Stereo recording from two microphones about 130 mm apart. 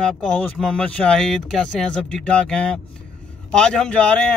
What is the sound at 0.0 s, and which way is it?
Speech, 5° left (ahead or behind).